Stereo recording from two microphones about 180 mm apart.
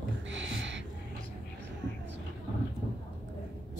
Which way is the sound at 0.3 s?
90° right.